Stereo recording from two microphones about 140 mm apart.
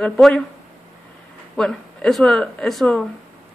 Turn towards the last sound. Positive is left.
turn(degrees=5)  # may be behind; listen again after turning